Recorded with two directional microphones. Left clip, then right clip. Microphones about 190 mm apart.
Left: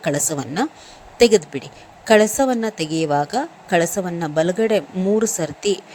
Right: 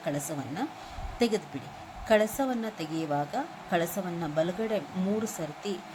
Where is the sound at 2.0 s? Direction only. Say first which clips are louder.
Left 11 dB; 45° left (ahead or behind).